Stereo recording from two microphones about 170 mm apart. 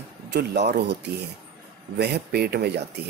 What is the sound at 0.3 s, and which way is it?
Speech, 80° right.